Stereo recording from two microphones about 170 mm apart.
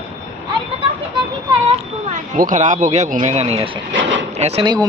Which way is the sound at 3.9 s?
90° right.